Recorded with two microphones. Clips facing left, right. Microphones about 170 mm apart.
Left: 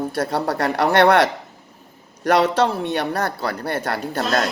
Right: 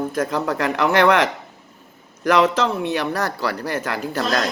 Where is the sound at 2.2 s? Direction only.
35° left (ahead or behind).